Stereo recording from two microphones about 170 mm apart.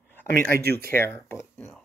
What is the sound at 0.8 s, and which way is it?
Speech, 15° left (ahead or behind).